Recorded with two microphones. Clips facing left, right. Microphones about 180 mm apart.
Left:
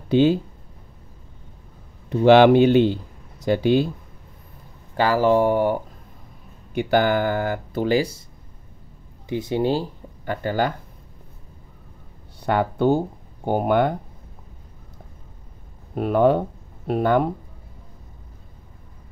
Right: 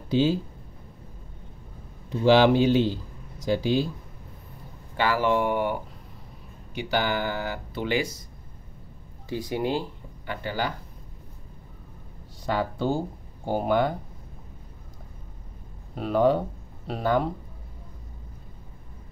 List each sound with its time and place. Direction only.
0.1 s speech: 60° left (ahead or behind)
2.0 s a man's voice: 65° left (ahead or behind)
4.9 s speech: 40° left (ahead or behind)
6.7 s speech: 55° left (ahead or behind); by 8.2 s 35° left (ahead or behind)
9.3 s speech: 25° left (ahead or behind); by 10.7 s 50° left (ahead or behind)
12.4 s a man's voice: 60° left (ahead or behind)
15.9 s speech: 55° left (ahead or behind)